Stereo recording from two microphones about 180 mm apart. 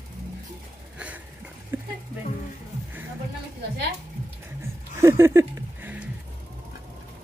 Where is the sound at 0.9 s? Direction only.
10° right (ahead or behind).